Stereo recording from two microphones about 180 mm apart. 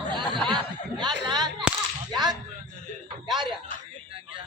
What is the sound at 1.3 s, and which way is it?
Whip, 25° right (ahead or behind).